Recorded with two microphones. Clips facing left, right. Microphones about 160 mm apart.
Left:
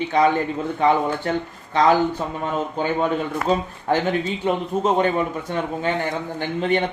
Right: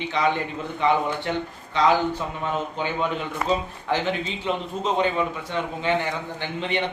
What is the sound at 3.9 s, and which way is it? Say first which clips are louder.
Speech: left 4 dB; 45° left (ahead or behind).